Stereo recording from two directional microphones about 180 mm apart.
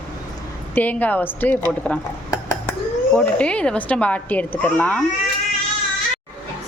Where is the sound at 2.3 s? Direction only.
20° left (ahead or behind).